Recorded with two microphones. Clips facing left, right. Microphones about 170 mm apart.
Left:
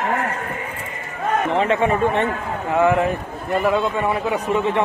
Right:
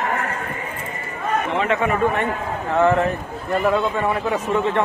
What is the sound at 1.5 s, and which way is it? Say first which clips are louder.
Speech: left 2 dB; 30° left (ahead or behind).